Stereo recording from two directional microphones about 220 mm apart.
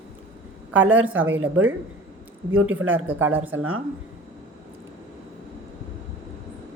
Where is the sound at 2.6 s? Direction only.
5° right (ahead or behind).